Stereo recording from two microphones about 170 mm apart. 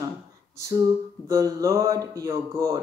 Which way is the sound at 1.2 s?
20° right (ahead or behind).